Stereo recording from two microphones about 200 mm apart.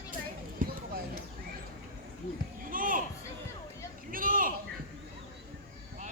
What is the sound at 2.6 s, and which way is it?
Children playing, 45° right (ahead or behind).